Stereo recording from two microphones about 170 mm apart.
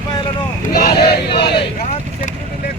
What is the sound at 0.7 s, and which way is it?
Speech, 65° left (ahead or behind).